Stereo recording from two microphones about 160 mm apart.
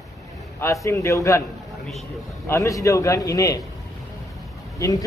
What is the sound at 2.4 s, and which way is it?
A man's voice, 20° left (ahead or behind).